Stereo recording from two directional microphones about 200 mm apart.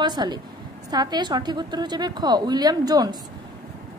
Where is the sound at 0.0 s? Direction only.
20° right (ahead or behind).